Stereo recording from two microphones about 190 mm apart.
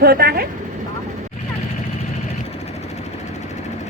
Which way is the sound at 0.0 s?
55° right (ahead or behind).